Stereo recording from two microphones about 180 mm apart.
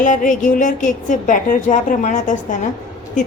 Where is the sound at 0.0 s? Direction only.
45° left (ahead or behind).